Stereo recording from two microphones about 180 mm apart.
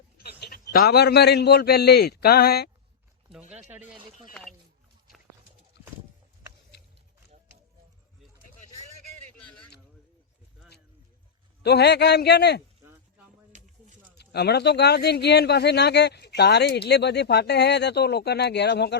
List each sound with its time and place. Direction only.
0.2 s a sound: 60° left (ahead or behind)
0.7 s a man's voice: 60° left (ahead or behind)
3.7 s speech: 10° right (ahead or behind)
5.7 s a sound: 70° left (ahead or behind)
11.6 s speech: 65° left (ahead or behind)
14.2 s speech: 65° left (ahead or behind)